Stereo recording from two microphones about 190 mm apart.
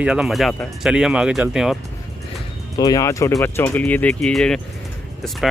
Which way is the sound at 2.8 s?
20° left (ahead or behind).